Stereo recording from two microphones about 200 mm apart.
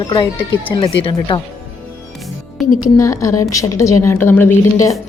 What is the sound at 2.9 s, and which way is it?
A woman's voice, 15° left (ahead or behind).